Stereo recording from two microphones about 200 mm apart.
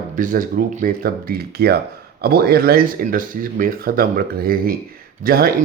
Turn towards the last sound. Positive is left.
turn(degrees=-50)  # may be behind; listen again after turning